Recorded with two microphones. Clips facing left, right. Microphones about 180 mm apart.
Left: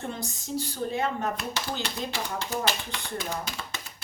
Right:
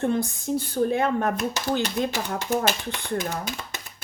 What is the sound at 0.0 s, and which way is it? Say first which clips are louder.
Speech: right 11 dB; 55° right (ahead or behind).